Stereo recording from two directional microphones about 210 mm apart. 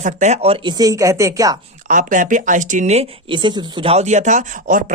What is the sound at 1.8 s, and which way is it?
Speech, 40° right (ahead or behind).